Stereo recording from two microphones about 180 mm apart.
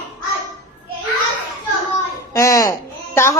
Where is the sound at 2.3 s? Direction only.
20° left (ahead or behind).